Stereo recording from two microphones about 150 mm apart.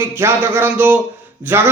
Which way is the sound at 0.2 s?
15° right (ahead or behind).